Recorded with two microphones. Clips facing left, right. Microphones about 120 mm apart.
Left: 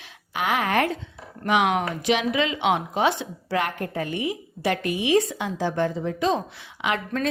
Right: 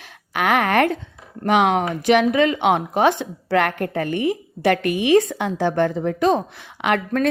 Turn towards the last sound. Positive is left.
turn(degrees=-55)  # may be behind; listen again after turning